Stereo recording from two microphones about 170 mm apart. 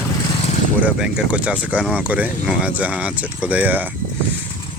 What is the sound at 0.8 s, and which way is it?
Speech, 5° right (ahead or behind).